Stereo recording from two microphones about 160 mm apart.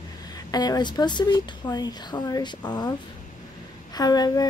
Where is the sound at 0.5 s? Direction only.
25° left (ahead or behind).